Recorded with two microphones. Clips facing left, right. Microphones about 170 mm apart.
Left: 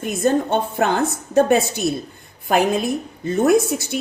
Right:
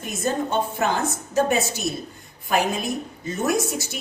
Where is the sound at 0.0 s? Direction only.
55° left (ahead or behind).